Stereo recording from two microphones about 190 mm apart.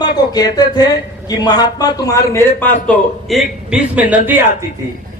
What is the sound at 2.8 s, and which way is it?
A man's voice, centre (ahead or behind).